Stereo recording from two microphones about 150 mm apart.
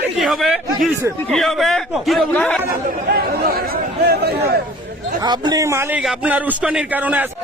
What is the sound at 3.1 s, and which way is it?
Chatter, 90° right.